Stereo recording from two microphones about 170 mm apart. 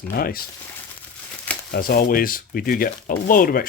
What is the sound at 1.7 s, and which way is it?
Speech, 60° left (ahead or behind).